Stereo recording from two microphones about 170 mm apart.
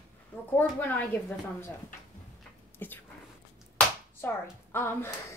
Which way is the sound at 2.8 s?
10° left (ahead or behind).